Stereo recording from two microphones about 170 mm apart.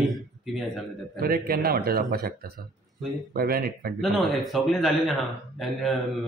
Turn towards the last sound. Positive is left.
turn(degrees=0)  # may be behind; listen again after turning